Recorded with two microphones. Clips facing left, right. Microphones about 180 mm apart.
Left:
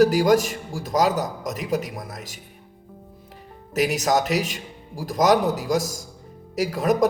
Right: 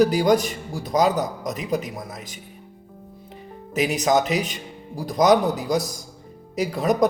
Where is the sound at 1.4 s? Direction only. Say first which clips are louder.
Even; 40° left (ahead or behind).